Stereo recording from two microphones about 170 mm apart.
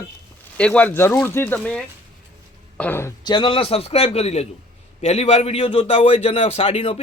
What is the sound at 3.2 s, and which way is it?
A man's voice, 25° left (ahead or behind).